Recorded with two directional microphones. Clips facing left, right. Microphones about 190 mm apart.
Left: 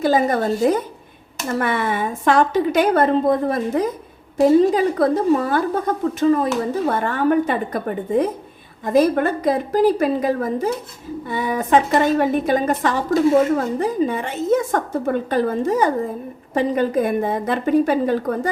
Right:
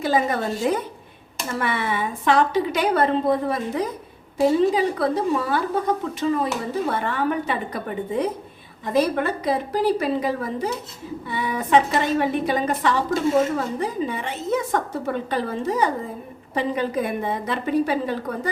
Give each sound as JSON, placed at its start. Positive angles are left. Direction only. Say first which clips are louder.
{"t": 0.0, "sound": "a woman's voice", "louder": "left 4 dB", "side_deg": 40}